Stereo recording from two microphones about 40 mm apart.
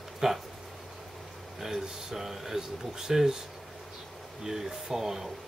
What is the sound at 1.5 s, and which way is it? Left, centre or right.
Speech, centre.